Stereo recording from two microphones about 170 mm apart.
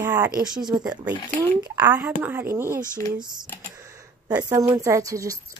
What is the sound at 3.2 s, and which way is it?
Speech, 25° right (ahead or behind).